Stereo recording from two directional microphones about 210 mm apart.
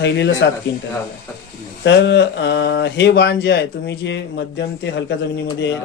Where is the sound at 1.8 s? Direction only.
55° left (ahead or behind).